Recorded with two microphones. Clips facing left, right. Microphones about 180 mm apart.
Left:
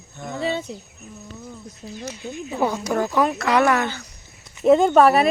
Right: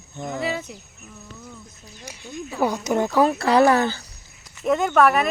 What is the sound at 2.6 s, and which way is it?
Speech, 15° right (ahead or behind).